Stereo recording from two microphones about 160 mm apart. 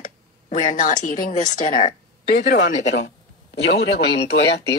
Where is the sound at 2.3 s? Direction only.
90° left.